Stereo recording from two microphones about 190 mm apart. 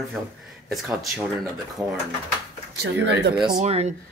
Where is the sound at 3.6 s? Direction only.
35° right (ahead or behind).